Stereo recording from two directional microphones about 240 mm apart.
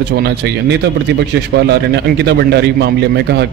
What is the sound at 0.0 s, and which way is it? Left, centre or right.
A man's voice, right.